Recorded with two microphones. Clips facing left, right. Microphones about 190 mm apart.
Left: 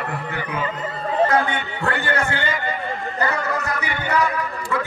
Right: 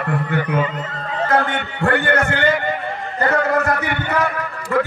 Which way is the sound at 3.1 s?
50° right (ahead or behind).